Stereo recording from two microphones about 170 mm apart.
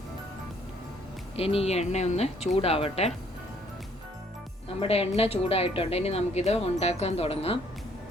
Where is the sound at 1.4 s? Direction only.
35° left (ahead or behind).